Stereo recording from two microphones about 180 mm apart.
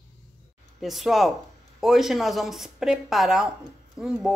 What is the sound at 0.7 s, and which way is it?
A man's voice, centre (ahead or behind).